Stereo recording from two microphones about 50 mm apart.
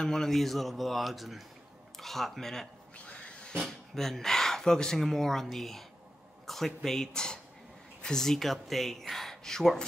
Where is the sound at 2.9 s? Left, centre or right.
Left.